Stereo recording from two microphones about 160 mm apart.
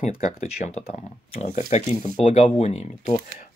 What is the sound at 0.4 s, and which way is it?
Speech, 45° left (ahead or behind).